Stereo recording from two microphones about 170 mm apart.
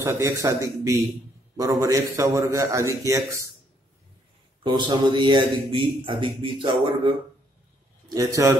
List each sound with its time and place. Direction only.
0.0 s a man's voice: 15° right (ahead or behind)
4.6 s a man's voice: 25° right (ahead or behind)
8.1 s a man's voice: 20° right (ahead or behind)